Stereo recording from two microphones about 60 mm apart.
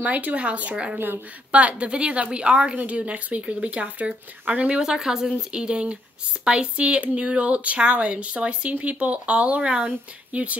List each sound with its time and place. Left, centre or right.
0.0 s a woman's voice: right
0.9 s speech: right
1.5 s a woman's voice: right